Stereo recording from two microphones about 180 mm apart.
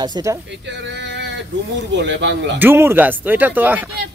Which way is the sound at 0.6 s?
75° right (ahead or behind).